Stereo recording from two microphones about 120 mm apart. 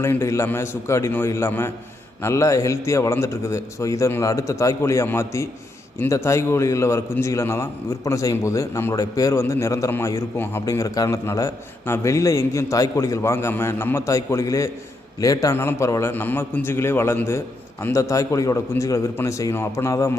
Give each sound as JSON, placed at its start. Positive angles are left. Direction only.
{"t": 0.0, "sound": "a man's voice", "side_deg": 20}